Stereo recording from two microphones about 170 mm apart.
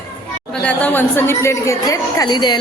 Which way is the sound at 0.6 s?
10° left (ahead or behind).